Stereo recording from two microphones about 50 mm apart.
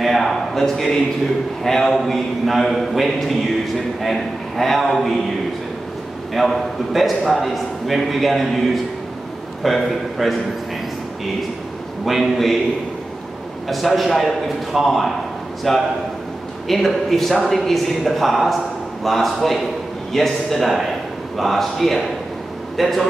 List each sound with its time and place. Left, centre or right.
0.0 s a sound: centre
1.6 s a man's voice: centre
6.3 s a man's voice: centre
12.0 s a man's voice: centre
13.7 s a man's voice: centre